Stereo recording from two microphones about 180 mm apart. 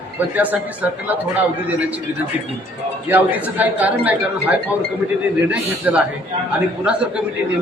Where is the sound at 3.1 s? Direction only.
10° right (ahead or behind).